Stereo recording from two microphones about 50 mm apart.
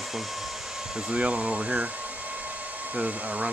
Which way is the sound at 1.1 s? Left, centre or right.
Right.